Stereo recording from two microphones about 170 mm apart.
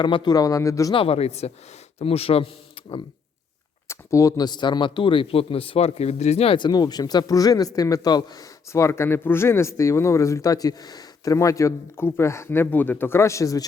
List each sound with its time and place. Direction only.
0.0 s speech: 25° left (ahead or behind)
0.9 s speech: 35° left (ahead or behind)
3.8 s speech: 20° left (ahead or behind)